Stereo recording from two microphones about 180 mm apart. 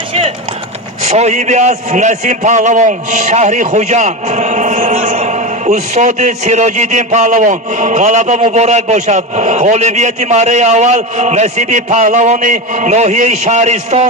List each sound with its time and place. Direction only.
1.0 s a man's voice: 40° right (ahead or behind)